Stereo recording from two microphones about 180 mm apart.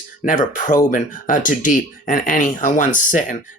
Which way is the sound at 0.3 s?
45° left (ahead or behind).